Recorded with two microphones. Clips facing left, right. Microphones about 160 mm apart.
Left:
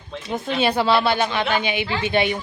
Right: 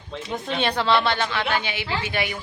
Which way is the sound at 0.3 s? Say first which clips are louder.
Left 4 dB; 5° left (ahead or behind).